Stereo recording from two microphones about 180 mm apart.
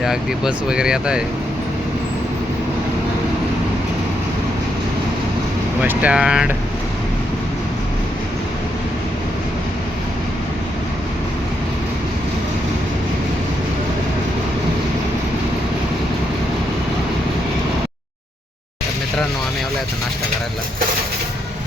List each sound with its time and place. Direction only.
0.0 s speech: 5° right (ahead or behind)
5.8 s speech: 10° right (ahead or behind)